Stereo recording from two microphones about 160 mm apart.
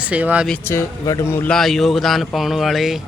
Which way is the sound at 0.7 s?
20° left (ahead or behind).